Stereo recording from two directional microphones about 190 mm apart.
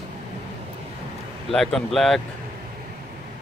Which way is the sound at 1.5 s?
Centre (ahead or behind).